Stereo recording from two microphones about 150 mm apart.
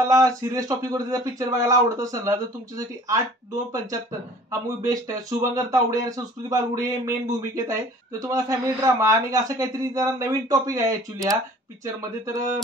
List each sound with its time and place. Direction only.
0.1 s speech: 20° right (ahead or behind)
4.5 s speech: 20° right (ahead or behind)